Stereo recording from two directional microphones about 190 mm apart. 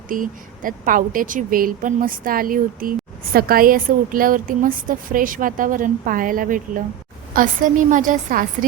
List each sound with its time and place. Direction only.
0.1 s a woman's voice: 45° right (ahead or behind)